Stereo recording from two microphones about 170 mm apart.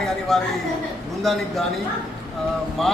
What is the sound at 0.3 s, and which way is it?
A man's voice, centre (ahead or behind).